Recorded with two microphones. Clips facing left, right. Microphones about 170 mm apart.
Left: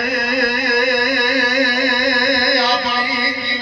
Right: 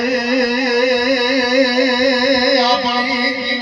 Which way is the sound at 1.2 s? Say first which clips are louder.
Right 3 dB; 35° right (ahead or behind).